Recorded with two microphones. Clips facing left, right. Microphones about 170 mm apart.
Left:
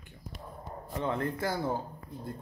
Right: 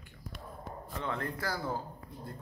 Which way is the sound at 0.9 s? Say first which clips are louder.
Left 5 dB; 30° left (ahead or behind).